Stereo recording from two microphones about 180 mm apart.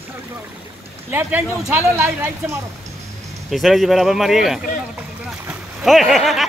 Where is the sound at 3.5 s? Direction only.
Centre (ahead or behind).